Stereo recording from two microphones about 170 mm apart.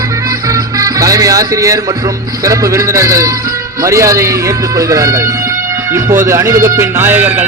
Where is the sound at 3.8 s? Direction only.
20° right (ahead or behind).